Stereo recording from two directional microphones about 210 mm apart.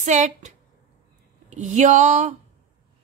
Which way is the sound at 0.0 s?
35° right (ahead or behind).